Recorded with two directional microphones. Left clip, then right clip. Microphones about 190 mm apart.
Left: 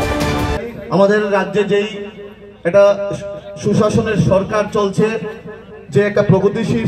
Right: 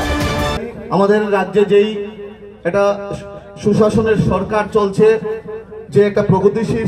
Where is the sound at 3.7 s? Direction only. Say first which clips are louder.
Right 2 dB; 50° left (ahead or behind).